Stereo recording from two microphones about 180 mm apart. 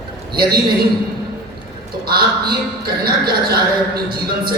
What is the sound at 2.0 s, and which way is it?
A man's voice, 60° right (ahead or behind).